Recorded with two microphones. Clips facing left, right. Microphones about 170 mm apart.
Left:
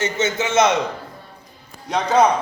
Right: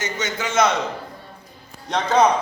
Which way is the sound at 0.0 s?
25° left (ahead or behind).